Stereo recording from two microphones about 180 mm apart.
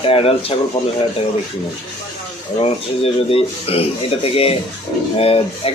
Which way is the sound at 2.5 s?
30° left (ahead or behind).